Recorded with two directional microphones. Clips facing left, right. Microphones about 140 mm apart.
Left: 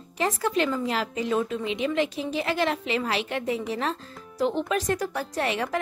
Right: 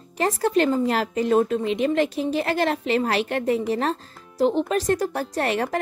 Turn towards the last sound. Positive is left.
turn(degrees=-45)  # may be behind; listen again after turning